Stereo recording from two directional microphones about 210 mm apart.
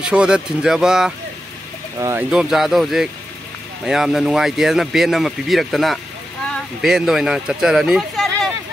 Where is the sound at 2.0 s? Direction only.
15° right (ahead or behind).